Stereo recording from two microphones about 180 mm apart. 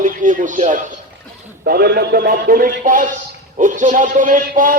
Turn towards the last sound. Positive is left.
turn(degrees=-50)  # may be behind; listen again after turning